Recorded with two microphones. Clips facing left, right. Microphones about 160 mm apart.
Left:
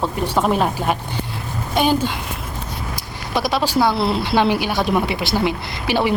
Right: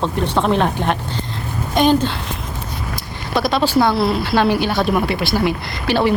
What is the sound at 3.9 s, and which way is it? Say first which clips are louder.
Speech: right 1 dB; 20° left (ahead or behind).